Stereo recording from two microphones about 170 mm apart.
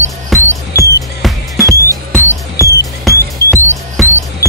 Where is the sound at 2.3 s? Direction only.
20° left (ahead or behind).